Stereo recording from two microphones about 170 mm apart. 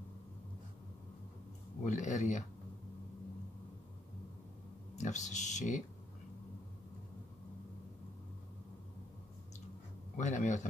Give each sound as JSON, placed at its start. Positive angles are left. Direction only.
{"t": 1.9, "sound": "speech", "side_deg": 45}
{"t": 4.9, "sound": "speech", "side_deg": 45}
{"t": 10.1, "sound": "speech", "side_deg": 45}